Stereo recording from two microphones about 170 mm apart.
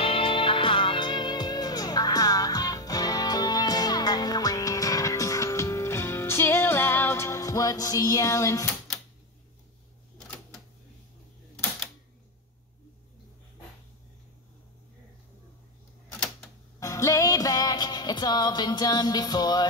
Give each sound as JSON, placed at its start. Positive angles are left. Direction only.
{"t": 0.0, "sound": "music", "side_deg": 30}
{"t": 16.8, "sound": "music", "side_deg": 20}